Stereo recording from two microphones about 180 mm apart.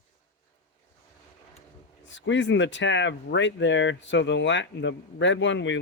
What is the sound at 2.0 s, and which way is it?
Speech, 90° left.